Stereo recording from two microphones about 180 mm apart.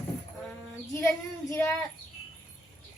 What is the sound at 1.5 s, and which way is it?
Speech, 15° left (ahead or behind).